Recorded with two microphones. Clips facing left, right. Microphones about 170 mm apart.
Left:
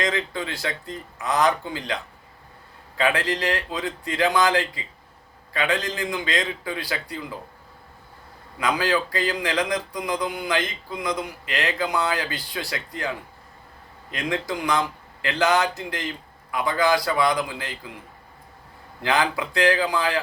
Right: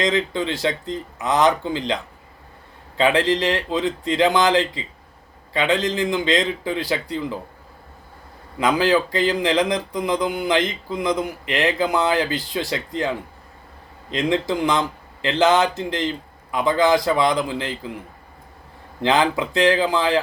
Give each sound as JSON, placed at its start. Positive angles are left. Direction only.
{"t": 0.0, "sound": "speech", "side_deg": -25}
{"t": 3.0, "sound": "speech", "side_deg": -25}
{"t": 8.5, "sound": "speech", "side_deg": -25}
{"t": 19.0, "sound": "speech", "side_deg": -25}